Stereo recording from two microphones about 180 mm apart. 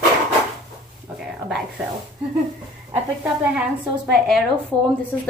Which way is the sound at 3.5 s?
5° right (ahead or behind).